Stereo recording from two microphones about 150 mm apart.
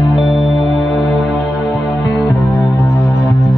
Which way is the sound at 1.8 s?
20° left (ahead or behind).